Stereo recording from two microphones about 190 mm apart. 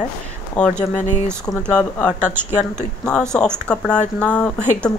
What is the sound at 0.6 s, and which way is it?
Speech, 5° left (ahead or behind).